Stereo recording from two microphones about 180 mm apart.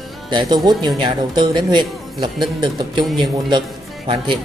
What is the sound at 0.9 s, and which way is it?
Speech, 25° right (ahead or behind).